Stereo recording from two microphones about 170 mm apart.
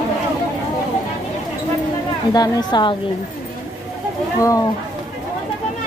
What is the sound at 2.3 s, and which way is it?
Speech, 25° left (ahead or behind).